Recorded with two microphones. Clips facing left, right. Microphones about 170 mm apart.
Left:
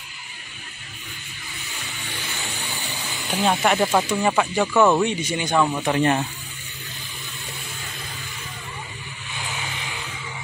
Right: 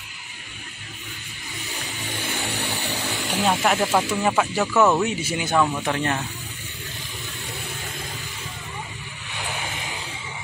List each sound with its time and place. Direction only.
2.2 s music: 65° right (ahead or behind)
3.4 s speech: centre (ahead or behind)
5.9 s speech: 20° left (ahead or behind)
9.5 s vehicle: 50° right (ahead or behind)